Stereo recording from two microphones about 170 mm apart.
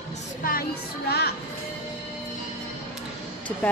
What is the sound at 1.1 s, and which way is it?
Music, 70° left (ahead or behind).